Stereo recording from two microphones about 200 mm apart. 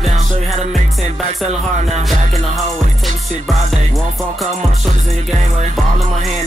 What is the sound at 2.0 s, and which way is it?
Music, centre (ahead or behind).